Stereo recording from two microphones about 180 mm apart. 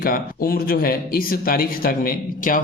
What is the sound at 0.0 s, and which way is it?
A man's voice, 55° left (ahead or behind).